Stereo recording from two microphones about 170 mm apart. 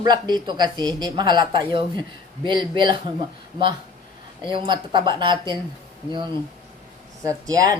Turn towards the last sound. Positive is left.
turn(degrees=-20)  # may be behind; listen again after turning